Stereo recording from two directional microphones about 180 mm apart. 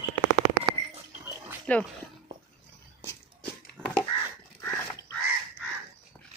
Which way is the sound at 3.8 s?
10° right (ahead or behind).